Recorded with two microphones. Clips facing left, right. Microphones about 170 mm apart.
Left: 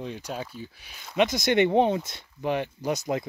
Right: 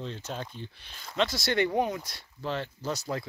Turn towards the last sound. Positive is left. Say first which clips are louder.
# left 5 dB
turn(degrees=20)  # may be behind; listen again after turning